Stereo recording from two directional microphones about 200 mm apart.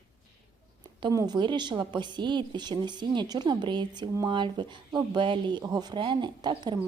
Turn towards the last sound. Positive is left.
turn(degrees=-20)  # may be behind; listen again after turning